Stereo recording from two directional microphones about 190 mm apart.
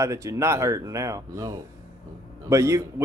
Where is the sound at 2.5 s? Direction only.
15° right (ahead or behind).